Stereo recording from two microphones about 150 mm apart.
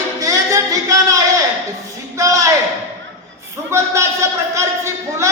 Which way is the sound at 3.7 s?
20° right (ahead or behind).